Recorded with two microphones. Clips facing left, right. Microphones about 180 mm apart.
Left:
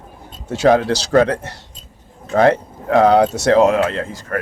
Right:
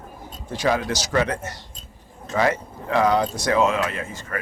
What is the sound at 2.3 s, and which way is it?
Speech, 60° left (ahead or behind).